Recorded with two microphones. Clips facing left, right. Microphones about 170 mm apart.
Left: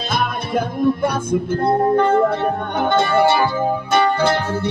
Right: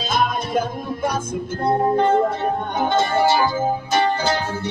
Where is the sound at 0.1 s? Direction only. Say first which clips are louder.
Even; 60° left (ahead or behind).